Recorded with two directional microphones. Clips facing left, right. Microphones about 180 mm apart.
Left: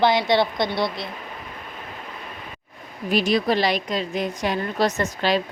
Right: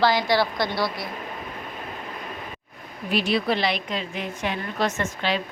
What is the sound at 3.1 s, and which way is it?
A woman's voice, 45° left (ahead or behind).